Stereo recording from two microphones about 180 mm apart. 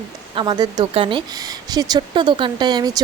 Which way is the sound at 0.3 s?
25° right (ahead or behind).